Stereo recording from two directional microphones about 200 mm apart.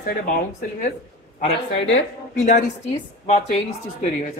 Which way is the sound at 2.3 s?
35° left (ahead or behind).